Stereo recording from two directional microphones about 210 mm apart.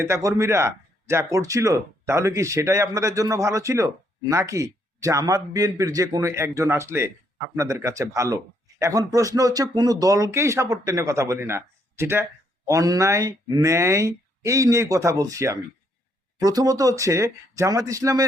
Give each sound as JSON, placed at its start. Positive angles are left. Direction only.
{"t": 0.0, "sound": "speech", "side_deg": -15}